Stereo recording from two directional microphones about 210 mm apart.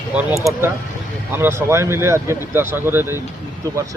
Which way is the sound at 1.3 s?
10° right (ahead or behind).